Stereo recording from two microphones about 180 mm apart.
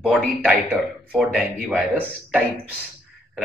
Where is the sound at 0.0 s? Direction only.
5° right (ahead or behind).